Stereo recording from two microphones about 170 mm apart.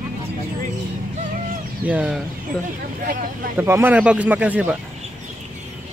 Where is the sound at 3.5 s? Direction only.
15° right (ahead or behind).